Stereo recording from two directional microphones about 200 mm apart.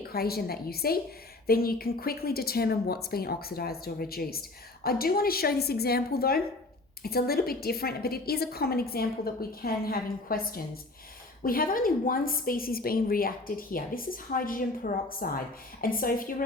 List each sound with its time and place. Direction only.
0.1 s a woman's voice: 50° left (ahead or behind)